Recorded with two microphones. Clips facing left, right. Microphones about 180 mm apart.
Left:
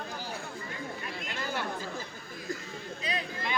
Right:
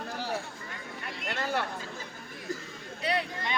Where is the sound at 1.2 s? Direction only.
70° right (ahead or behind).